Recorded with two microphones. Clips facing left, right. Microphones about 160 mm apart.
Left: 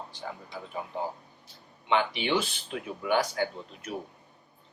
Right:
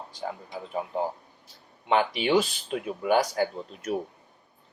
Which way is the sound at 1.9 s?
40° right (ahead or behind).